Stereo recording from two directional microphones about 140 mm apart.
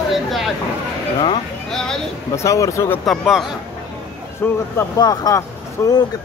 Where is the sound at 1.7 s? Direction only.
5° left (ahead or behind).